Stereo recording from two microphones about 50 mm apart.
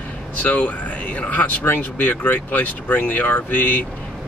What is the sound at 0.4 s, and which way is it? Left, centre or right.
Speech, left.